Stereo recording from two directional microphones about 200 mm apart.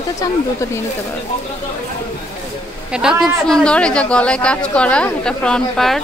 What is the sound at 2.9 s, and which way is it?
A man's voice, 5° right (ahead or behind).